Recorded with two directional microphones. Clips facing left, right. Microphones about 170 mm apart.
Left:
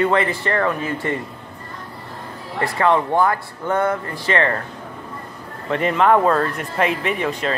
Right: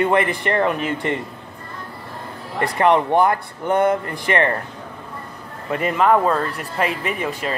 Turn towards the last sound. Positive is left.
turn(degrees=-5)  # may be behind; listen again after turning